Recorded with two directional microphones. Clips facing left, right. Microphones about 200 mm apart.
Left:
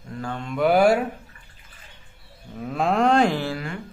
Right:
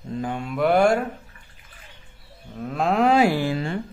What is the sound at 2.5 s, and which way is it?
Cattle, centre (ahead or behind).